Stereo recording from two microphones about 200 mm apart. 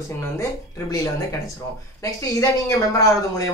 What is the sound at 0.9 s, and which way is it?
Speech, 15° left (ahead or behind).